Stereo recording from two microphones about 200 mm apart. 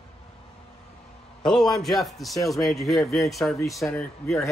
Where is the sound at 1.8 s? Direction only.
Centre (ahead or behind).